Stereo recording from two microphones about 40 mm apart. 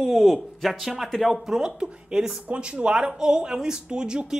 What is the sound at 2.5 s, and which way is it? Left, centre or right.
Speech, right.